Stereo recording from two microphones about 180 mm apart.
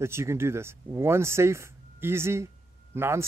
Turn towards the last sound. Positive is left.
turn(degrees=-15)  # may be behind; listen again after turning